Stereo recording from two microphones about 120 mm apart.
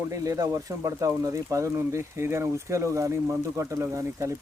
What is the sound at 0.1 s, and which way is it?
Speech, 25° right (ahead or behind).